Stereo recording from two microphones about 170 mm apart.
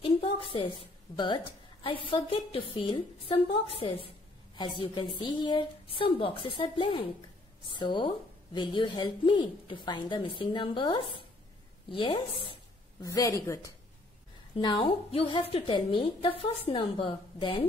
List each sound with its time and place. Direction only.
0.0 s a sound: 30° left (ahead or behind)
0.6 s a woman's voice: 25° left (ahead or behind)
13.0 s a woman's voice: 20° left (ahead or behind)
14.6 s a woman's voice: 30° left (ahead or behind)